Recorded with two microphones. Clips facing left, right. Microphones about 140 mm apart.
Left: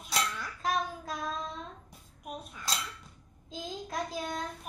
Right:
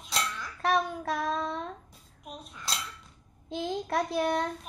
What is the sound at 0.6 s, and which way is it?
Child singing, 70° right (ahead or behind).